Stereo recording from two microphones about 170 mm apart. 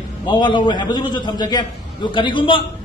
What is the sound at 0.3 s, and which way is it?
A man's voice, 25° left (ahead or behind).